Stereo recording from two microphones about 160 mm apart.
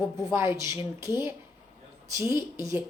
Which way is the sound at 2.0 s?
15° right (ahead or behind).